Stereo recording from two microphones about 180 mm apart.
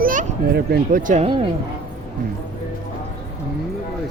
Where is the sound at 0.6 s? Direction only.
65° right (ahead or behind).